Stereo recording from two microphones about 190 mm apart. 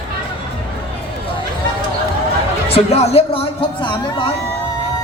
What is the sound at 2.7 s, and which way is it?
Speech, 30° left (ahead or behind).